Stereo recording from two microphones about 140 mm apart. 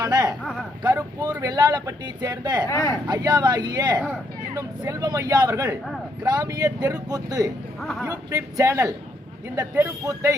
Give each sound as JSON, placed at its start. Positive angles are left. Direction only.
{"t": 0.0, "sound": "a sound", "side_deg": -30}
{"t": 1.4, "sound": "speech", "side_deg": -30}
{"t": 2.6, "sound": "speech", "side_deg": 20}
{"t": 3.1, "sound": "speech", "side_deg": -30}
{"t": 7.8, "sound": "speech", "side_deg": 0}
{"t": 8.3, "sound": "speech", "side_deg": -20}